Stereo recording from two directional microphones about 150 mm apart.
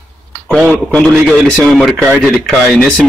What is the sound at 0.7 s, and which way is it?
A man's voice, 10° left (ahead or behind).